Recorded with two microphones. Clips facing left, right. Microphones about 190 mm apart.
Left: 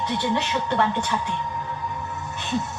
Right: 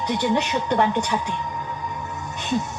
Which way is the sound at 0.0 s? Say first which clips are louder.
Right 3 dB; 15° right (ahead or behind).